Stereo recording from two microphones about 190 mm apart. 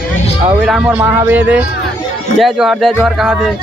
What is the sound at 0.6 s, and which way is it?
A man's voice, centre (ahead or behind).